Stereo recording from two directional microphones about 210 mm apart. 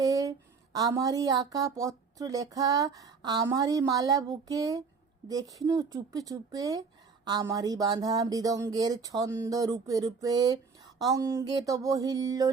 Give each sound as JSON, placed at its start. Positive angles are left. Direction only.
{"t": 0.0, "sound": "speech", "side_deg": -15}